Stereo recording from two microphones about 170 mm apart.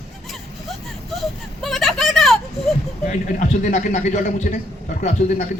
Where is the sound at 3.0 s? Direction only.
55° left (ahead or behind).